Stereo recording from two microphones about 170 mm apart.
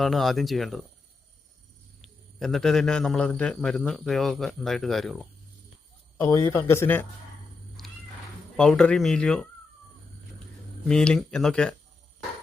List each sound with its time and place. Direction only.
0.0 s a man's voice: centre (ahead or behind)
2.0 s a man's voice: centre (ahead or behind)
6.1 s speech: 20° left (ahead or behind)
7.8 s cat: centre (ahead or behind)
8.5 s a man's voice: 5° left (ahead or behind)
10.8 s a man's voice: 5° left (ahead or behind)